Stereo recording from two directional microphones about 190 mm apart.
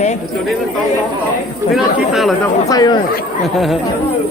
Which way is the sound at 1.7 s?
Centre (ahead or behind).